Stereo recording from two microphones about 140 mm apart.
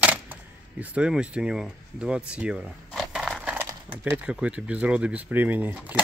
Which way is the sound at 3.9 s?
15° right (ahead or behind).